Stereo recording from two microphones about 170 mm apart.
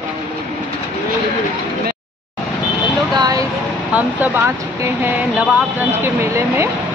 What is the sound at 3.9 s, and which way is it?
Speech, 10° right (ahead or behind).